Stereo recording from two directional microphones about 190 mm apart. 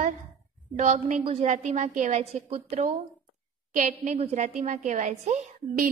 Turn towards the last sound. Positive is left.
turn(degrees=-40)  # may be behind; listen again after turning